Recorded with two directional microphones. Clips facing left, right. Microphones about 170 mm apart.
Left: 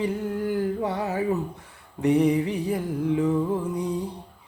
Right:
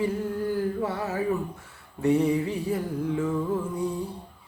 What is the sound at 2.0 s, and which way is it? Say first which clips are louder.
Music: left 2 dB; 15° left (ahead or behind).